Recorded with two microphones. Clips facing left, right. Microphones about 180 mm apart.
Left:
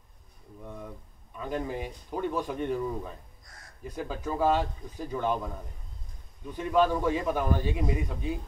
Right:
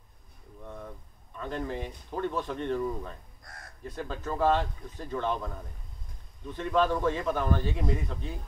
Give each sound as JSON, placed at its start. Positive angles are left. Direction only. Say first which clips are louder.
{"t": 1.3, "sound": "a man's voice", "louder": "left 1 dB", "side_deg": 10}
{"t": 3.5, "sound": "speech", "louder": "right 7 dB", "side_deg": -55}
{"t": 3.8, "sound": "a man's voice", "louder": "left 2 dB", "side_deg": 10}